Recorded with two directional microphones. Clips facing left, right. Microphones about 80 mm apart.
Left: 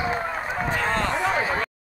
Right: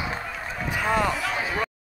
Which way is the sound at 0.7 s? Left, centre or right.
Centre.